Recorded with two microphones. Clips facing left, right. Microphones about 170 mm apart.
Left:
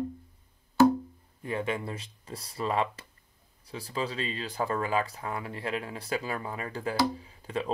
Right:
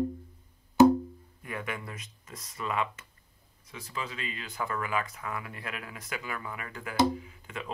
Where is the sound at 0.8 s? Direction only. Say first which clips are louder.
Right 2 dB; 20° right (ahead or behind).